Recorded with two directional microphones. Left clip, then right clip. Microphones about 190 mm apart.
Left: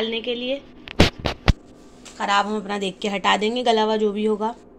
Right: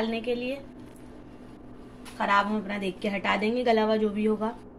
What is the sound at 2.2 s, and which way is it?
A woman's voice, 45° left (ahead or behind).